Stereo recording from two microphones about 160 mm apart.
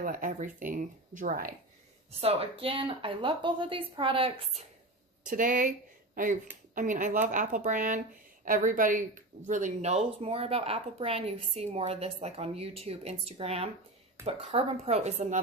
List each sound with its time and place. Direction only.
0.0 s speech: 60° right (ahead or behind)
2.0 s speech: 40° right (ahead or behind)
5.3 s speech: 55° right (ahead or behind)